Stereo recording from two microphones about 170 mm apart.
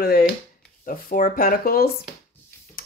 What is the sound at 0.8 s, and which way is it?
Speech, 55° left (ahead or behind).